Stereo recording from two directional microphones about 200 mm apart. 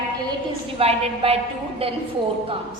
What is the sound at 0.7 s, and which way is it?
Speech, 30° right (ahead or behind).